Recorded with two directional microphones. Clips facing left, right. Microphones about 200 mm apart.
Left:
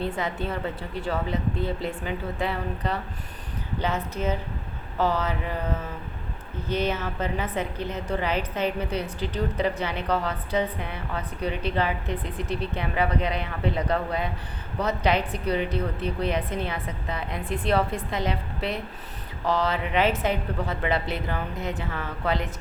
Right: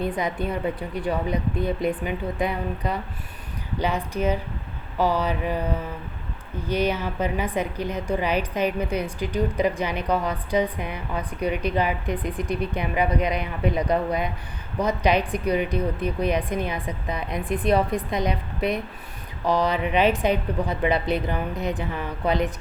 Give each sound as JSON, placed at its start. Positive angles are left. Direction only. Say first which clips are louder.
{"t": 0.0, "sound": "a woman's voice", "louder": "right 3 dB", "side_deg": -15}